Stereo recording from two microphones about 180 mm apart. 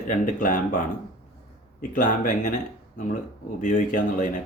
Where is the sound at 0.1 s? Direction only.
50° left (ahead or behind).